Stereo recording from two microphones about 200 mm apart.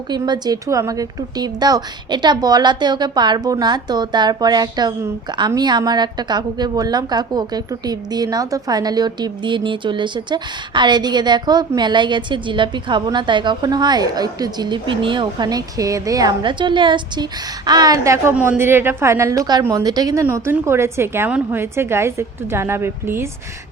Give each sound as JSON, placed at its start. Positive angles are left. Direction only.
{"t": 0.1, "sound": "a woman's voice", "side_deg": -20}